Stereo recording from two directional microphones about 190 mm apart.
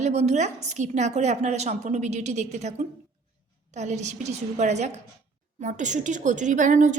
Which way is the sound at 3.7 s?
35° right (ahead or behind).